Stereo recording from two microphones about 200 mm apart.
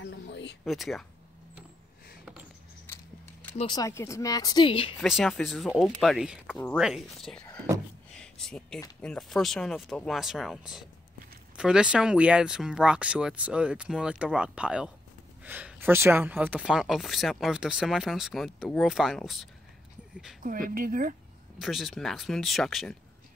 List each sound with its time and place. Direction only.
0.0 s a sound: 60° left (ahead or behind)
0.7 s speech: centre (ahead or behind)
2.9 s a sound: 10° left (ahead or behind)
3.5 s speech: 20° left (ahead or behind)
4.9 s speech: centre (ahead or behind)
8.1 s a sound: 5° left (ahead or behind)
9.0 s speech: 5° left (ahead or behind)
20.4 s speech: 45° right (ahead or behind)
21.5 s speech: centre (ahead or behind)